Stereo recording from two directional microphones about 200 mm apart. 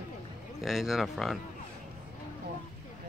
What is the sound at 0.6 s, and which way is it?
Speech, centre (ahead or behind).